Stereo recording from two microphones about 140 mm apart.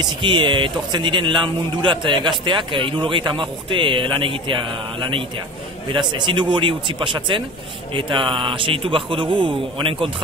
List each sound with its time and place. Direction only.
0.0 s a man's voice: 35° right (ahead or behind)
5.9 s a man's voice: 35° right (ahead or behind)